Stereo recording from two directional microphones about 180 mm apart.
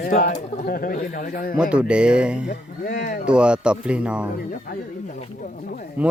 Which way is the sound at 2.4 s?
45° left (ahead or behind).